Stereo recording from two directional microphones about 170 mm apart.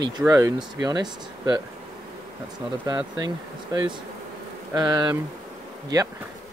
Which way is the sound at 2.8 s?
20° right (ahead or behind).